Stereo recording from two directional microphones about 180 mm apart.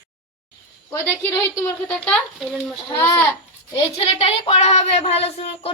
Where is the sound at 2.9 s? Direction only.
10° left (ahead or behind).